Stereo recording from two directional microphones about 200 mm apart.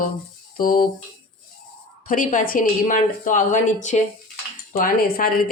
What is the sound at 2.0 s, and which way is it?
A woman's voice, 45° left (ahead or behind).